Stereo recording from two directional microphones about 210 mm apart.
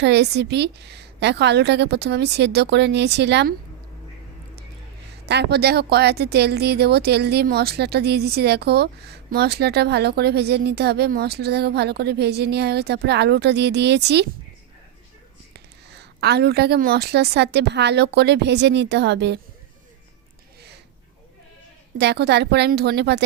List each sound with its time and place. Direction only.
0.0 s a woman's voice: 55° right (ahead or behind)
5.2 s a woman's voice: 50° right (ahead or behind)
15.5 s a woman's voice: 50° right (ahead or behind)
21.9 s a woman's voice: 50° right (ahead or behind)